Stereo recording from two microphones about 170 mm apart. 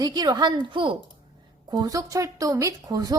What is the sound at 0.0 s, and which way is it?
A woman's voice, 25° right (ahead or behind).